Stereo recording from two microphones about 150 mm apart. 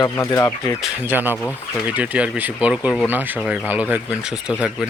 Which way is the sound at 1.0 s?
15° right (ahead or behind).